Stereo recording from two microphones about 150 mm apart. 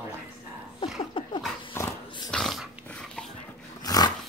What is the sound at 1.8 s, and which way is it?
Dog, 15° left (ahead or behind).